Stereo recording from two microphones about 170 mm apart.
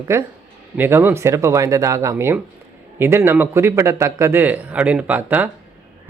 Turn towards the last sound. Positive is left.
turn(degrees=-10)  # may be behind; listen again after turning